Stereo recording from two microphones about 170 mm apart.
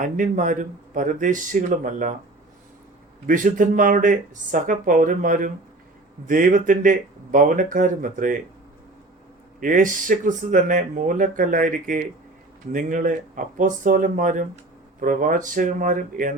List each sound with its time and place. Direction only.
0.0 s speech: 50° right (ahead or behind)
3.2 s speech: 50° right (ahead or behind)
9.6 s speech: 50° right (ahead or behind)